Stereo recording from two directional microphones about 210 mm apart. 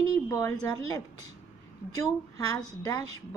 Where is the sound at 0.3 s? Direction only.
15° left (ahead or behind).